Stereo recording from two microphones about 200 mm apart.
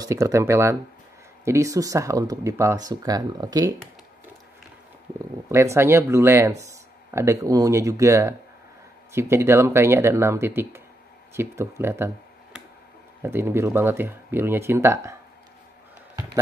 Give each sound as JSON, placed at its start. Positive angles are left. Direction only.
{"t": 0.0, "sound": "speech", "side_deg": -15}
{"t": 5.2, "sound": "speech", "side_deg": -15}
{"t": 13.2, "sound": "speech", "side_deg": -10}